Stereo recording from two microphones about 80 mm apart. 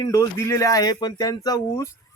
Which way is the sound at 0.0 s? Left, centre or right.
Left.